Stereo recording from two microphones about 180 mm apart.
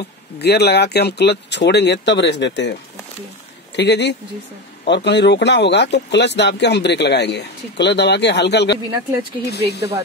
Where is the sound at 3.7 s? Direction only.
70° left (ahead or behind).